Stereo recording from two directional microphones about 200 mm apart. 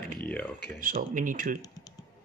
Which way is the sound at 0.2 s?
5° left (ahead or behind).